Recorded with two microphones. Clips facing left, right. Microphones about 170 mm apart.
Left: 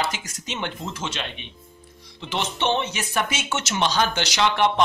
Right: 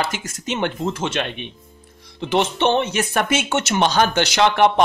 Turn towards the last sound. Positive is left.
turn(degrees=-55)  # may be behind; listen again after turning